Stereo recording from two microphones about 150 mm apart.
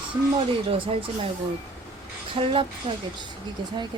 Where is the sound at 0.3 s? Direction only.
40° right (ahead or behind).